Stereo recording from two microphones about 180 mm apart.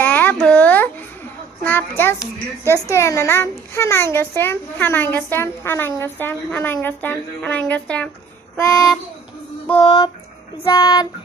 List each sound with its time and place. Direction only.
0.0 s a sound: 10° left (ahead or behind)
1.6 s a child's voice: 10° left (ahead or behind)
8.5 s a child's voice: 20° left (ahead or behind)
9.8 s child singing: 20° left (ahead or behind)